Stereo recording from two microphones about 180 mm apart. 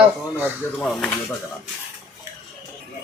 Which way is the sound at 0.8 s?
5° left (ahead or behind).